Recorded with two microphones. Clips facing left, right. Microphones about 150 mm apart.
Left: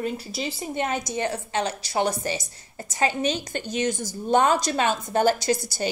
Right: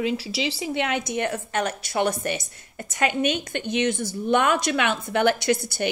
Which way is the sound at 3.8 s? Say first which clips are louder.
Right 2 dB; 60° right (ahead or behind).